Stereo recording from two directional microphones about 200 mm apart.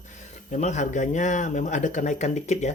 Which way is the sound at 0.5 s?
35° left (ahead or behind).